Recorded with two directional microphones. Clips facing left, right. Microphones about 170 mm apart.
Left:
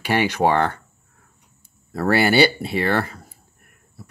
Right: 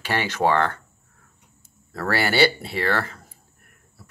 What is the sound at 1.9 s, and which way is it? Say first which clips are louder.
Speech: left 6 dB; 20° left (ahead or behind).